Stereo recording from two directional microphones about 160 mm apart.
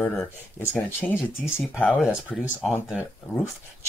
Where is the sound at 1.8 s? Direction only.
5° left (ahead or behind).